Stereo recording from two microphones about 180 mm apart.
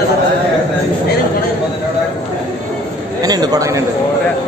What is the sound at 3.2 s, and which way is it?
Speech, 20° right (ahead or behind).